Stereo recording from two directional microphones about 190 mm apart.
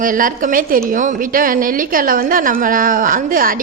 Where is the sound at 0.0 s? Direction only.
45° right (ahead or behind).